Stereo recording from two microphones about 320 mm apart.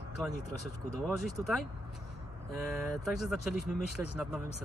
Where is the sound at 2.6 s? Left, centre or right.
Centre.